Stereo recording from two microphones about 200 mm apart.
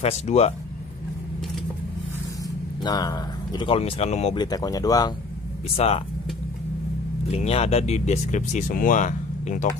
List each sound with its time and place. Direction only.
0.0 s speech: 30° left (ahead or behind)
2.8 s speech: 20° left (ahead or behind)
4.4 s speech: 20° left (ahead or behind)
5.8 s speech: 30° left (ahead or behind)
7.2 s speech: 30° left (ahead or behind)